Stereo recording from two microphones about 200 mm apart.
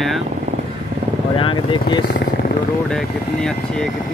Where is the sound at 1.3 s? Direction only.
25° left (ahead or behind).